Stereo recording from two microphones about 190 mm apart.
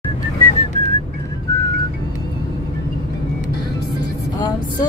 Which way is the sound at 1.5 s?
15° left (ahead or behind).